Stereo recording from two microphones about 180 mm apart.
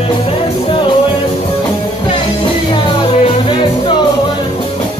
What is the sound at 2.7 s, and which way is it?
Music, 30° left (ahead or behind).